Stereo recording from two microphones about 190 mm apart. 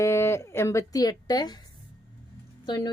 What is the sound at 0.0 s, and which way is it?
Speech, 15° left (ahead or behind).